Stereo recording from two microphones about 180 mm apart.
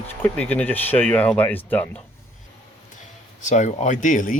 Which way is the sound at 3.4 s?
45° left (ahead or behind).